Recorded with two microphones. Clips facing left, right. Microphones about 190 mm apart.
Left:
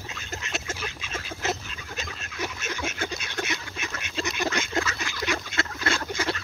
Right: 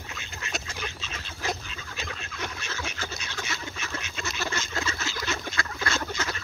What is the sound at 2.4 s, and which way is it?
Duck, 15° left (ahead or behind).